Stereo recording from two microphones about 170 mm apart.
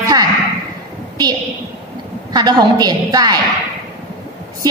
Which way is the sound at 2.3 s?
25° right (ahead or behind).